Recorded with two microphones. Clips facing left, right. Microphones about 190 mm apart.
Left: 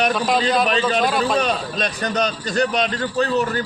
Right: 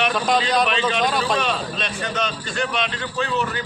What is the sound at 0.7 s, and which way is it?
A man's voice, 40° left (ahead or behind).